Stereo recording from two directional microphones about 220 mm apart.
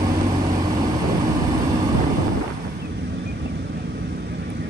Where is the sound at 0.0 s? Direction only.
20° right (ahead or behind).